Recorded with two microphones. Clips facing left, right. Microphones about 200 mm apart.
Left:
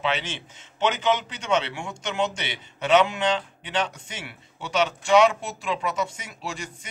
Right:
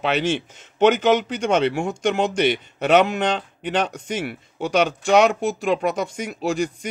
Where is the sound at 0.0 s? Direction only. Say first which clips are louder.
Right 7 dB; 60° right (ahead or behind).